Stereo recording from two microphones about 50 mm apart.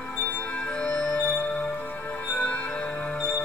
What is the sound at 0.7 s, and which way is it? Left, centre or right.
Music, left.